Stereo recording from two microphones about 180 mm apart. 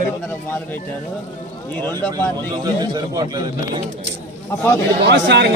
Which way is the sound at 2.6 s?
20° right (ahead or behind).